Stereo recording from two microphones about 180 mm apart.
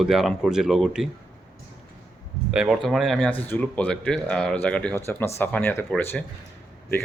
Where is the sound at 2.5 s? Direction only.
5° right (ahead or behind).